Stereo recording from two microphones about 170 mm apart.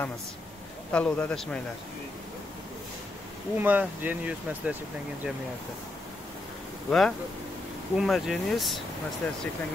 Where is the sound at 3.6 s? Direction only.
10° right (ahead or behind).